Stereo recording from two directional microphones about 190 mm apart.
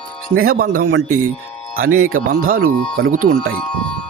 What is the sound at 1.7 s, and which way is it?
Speech, 90° right.